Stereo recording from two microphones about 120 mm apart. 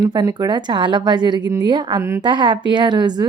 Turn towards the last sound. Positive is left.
turn(degrees=-35)  # may be behind; listen again after turning